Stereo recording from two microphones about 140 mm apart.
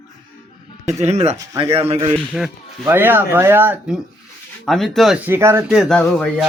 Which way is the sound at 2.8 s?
15° right (ahead or behind).